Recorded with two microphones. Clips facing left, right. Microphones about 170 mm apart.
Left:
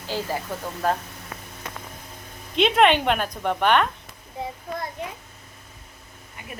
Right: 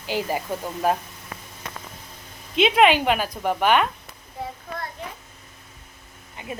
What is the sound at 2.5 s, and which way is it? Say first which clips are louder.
A woman's voice: right 1 dB; 5° right (ahead or behind).